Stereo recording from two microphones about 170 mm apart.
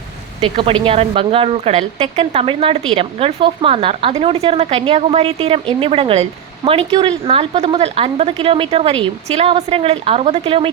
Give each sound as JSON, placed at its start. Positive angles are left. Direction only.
{"t": 0.4, "sound": "a woman's voice", "side_deg": -30}